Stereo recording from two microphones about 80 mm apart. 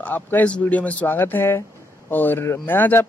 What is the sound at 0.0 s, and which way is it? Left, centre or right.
Speech, left.